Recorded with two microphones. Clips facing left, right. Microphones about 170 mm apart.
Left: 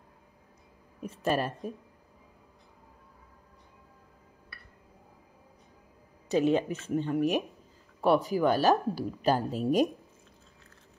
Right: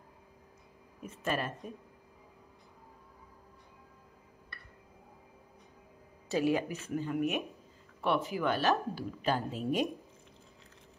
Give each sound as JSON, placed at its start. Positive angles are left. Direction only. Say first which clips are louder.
{"t": 1.0, "sound": "a woman's voice", "louder": "left 5 dB", "side_deg": 35}
{"t": 6.2, "sound": "a woman's voice", "louder": "left 4 dB", "side_deg": 20}